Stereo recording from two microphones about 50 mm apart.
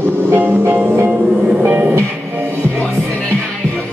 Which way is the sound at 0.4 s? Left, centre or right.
Right.